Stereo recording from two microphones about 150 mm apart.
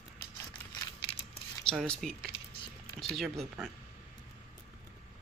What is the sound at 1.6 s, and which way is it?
Speech, 5° left (ahead or behind).